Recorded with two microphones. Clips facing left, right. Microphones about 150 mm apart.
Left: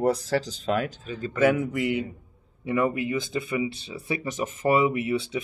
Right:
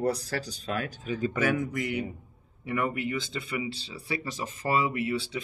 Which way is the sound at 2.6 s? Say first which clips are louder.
Left 5 dB; 20° left (ahead or behind).